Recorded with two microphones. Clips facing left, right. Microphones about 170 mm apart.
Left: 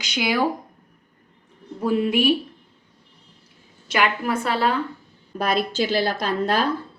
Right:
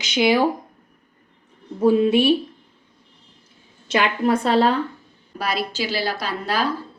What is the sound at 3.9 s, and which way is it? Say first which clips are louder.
Speech: right 3 dB; 30° right (ahead or behind).